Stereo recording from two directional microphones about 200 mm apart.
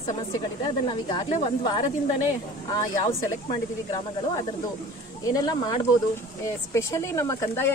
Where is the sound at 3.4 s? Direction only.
20° left (ahead or behind).